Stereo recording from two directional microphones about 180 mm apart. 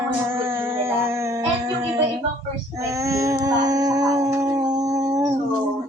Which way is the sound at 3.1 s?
15° right (ahead or behind).